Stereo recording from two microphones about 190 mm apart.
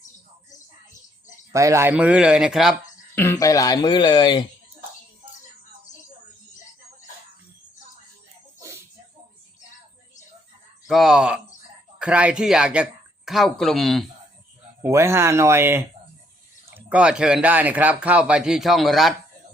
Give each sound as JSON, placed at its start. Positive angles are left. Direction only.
{"t": 1.5, "sound": "speech", "side_deg": -15}
{"t": 3.2, "sound": "speech", "side_deg": 15}
{"t": 10.8, "sound": "speech", "side_deg": 0}
{"t": 14.8, "sound": "speech", "side_deg": -15}